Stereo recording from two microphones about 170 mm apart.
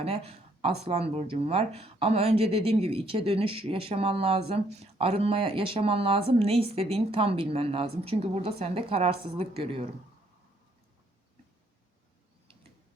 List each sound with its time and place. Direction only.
0.0 s speech: 35° right (ahead or behind)